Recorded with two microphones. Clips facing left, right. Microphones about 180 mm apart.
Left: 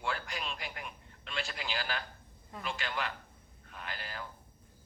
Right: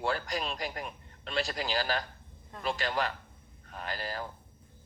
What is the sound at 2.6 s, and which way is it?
Speech, 35° right (ahead or behind).